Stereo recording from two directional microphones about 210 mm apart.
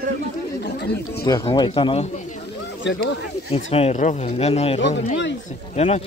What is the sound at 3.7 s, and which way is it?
Speech, 30° left (ahead or behind).